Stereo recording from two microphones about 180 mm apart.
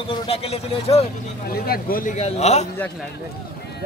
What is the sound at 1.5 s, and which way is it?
A man's voice, 55° left (ahead or behind).